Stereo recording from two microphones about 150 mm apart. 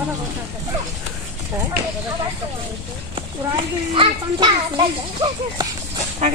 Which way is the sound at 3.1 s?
35° right (ahead or behind).